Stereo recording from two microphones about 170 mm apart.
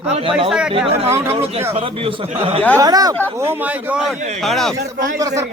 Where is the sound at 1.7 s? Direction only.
35° right (ahead or behind).